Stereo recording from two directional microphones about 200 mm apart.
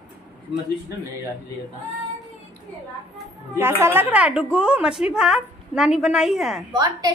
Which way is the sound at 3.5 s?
10° right (ahead or behind).